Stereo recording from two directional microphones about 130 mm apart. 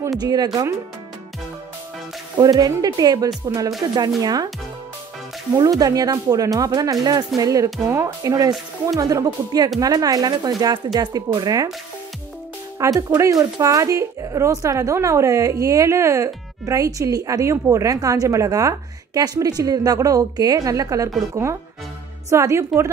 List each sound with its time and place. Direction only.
0.2 s speech: 30° right (ahead or behind)
2.3 s speech: 30° right (ahead or behind)
5.5 s speech: 30° right (ahead or behind)
12.8 s speech: 25° right (ahead or behind)